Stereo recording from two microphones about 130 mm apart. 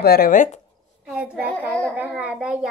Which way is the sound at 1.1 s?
10° right (ahead or behind).